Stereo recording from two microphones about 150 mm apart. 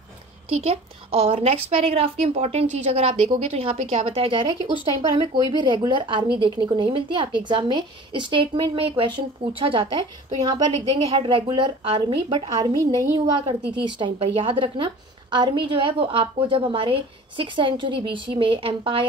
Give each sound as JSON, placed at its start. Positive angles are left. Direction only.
{"t": 0.6, "sound": "a woman's voice", "side_deg": -45}